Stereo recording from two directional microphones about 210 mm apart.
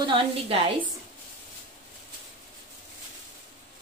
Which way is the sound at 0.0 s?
25° right (ahead or behind).